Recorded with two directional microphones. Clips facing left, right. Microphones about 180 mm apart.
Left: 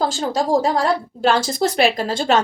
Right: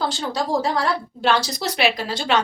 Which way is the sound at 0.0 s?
45° left (ahead or behind).